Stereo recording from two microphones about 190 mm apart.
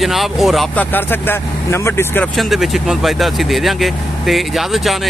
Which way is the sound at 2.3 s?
Centre (ahead or behind).